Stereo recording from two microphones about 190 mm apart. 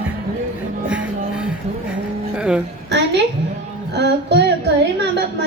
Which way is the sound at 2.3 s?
5° right (ahead or behind).